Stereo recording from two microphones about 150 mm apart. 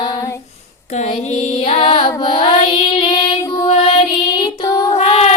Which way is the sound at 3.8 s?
30° left (ahead or behind).